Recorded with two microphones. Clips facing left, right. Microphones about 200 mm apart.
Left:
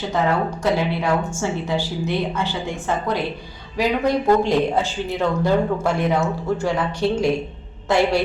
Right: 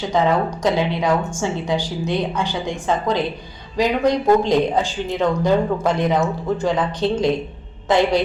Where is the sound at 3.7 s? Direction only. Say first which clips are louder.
Right 2 dB; 15° right (ahead or behind).